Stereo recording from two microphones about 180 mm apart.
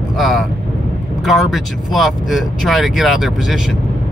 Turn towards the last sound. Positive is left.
turn(degrees=0)  # may be behind; listen again after turning